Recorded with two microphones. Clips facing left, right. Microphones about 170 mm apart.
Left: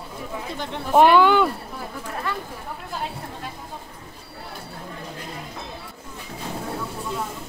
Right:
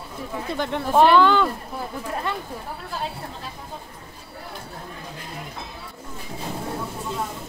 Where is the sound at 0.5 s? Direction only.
55° right (ahead or behind).